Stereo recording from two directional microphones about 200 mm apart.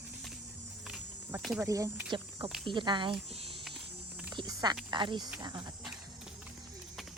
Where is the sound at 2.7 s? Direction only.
25° right (ahead or behind).